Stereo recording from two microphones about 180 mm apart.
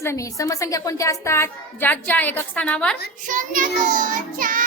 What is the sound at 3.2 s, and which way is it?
Child singing, 45° right (ahead or behind).